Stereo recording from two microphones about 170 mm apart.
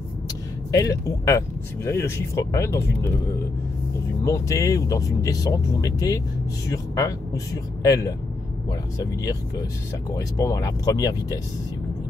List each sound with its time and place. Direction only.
0.7 s speech: 20° left (ahead or behind)
4.2 s speech: 20° left (ahead or behind)